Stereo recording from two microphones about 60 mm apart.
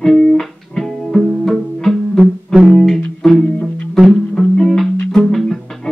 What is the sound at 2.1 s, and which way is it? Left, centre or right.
Music, centre.